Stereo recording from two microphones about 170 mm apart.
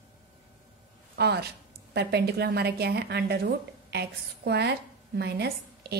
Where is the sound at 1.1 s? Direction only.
70° right (ahead or behind).